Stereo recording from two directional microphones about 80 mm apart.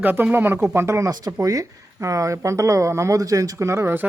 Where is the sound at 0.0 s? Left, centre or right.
Right.